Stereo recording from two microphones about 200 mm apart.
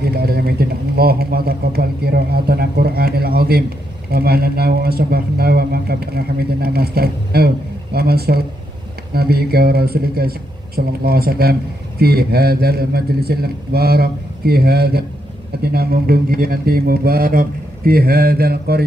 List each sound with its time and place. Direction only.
0.0 s speech: 50° right (ahead or behind)